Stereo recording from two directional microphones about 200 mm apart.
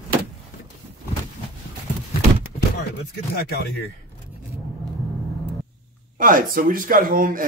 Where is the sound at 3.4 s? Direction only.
50° left (ahead or behind).